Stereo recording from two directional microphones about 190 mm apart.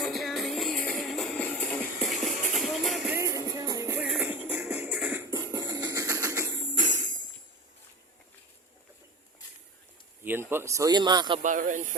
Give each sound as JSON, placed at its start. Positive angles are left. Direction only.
{"t": 0.0, "sound": "music", "side_deg": 0}
{"t": 3.2, "sound": "music", "side_deg": -15}
{"t": 10.2, "sound": "a man's voice", "side_deg": -10}
{"t": 11.4, "sound": "speech", "side_deg": -45}